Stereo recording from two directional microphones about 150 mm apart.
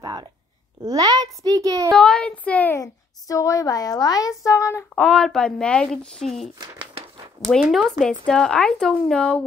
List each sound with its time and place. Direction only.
0.0 s a sound: 25° right (ahead or behind)
0.8 s a child's voice: 25° right (ahead or behind)
1.9 s a child's voice: 5° left (ahead or behind)
2.8 s a woman's voice: 20° left (ahead or behind)
4.9 s speech: 5° left (ahead or behind)
7.4 s a woman's voice: 20° left (ahead or behind)
8.3 s speech: 5° left (ahead or behind)